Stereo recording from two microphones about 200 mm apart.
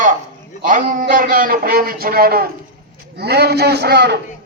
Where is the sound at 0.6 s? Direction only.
40° right (ahead or behind).